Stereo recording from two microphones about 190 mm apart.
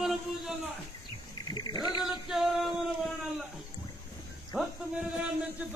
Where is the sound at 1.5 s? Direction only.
20° left (ahead or behind).